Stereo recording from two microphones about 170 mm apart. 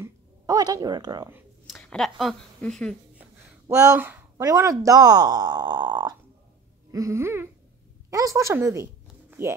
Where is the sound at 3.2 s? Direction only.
15° right (ahead or behind).